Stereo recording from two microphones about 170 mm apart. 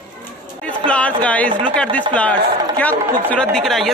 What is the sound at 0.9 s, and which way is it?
Speech, 10° left (ahead or behind).